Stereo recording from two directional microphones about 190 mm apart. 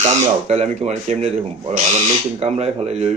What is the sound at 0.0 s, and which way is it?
Speech, 35° right (ahead or behind).